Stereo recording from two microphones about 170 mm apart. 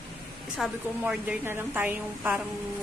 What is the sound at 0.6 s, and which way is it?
A woman's voice, 5° right (ahead or behind).